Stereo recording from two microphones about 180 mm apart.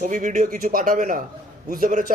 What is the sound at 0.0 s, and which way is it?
A man's voice, 45° right (ahead or behind).